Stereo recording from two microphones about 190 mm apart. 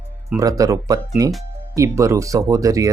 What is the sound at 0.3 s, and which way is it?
Speech, 15° right (ahead or behind).